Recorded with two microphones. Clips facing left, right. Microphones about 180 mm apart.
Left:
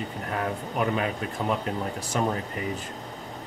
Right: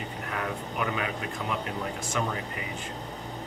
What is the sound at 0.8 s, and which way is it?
Speech, 40° left (ahead or behind).